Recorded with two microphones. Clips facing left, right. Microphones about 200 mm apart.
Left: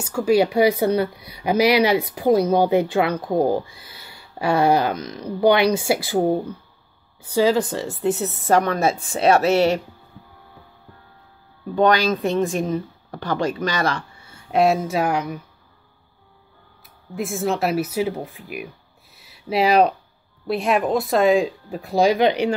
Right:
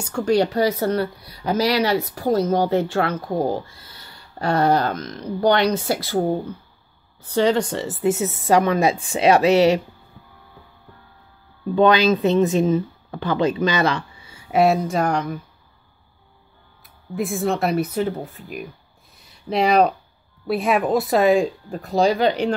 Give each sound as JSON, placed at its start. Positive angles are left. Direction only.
{"t": 0.0, "sound": "speech", "side_deg": 5}
{"t": 12.2, "sound": "a woman's voice", "side_deg": -20}
{"t": 14.5, "sound": "speech", "side_deg": 0}
{"t": 16.8, "sound": "speech", "side_deg": 0}
{"t": 19.1, "sound": "a sound", "side_deg": 5}
{"t": 20.4, "sound": "speech", "side_deg": 0}